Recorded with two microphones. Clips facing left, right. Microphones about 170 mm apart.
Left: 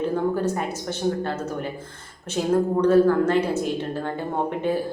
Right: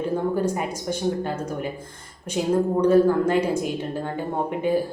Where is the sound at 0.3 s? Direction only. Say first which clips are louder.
Even; 10° right (ahead or behind).